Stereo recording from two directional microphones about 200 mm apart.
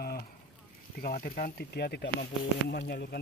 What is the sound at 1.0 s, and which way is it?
Speech, 45° left (ahead or behind).